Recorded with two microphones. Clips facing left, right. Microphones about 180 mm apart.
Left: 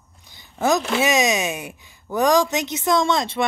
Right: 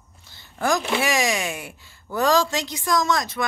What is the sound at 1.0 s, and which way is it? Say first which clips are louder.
A woman's voice: left 4 dB; 20° left (ahead or behind).